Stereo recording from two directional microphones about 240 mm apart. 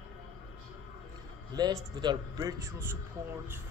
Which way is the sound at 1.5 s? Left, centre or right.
Centre.